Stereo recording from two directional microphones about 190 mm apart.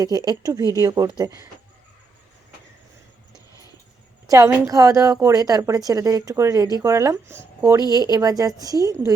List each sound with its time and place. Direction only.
0.0 s a woman's voice: 20° right (ahead or behind)
4.3 s a woman's voice: 15° right (ahead or behind)